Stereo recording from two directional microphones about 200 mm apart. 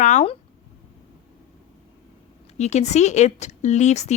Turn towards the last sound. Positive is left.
turn(degrees=35)  # may be behind; listen again after turning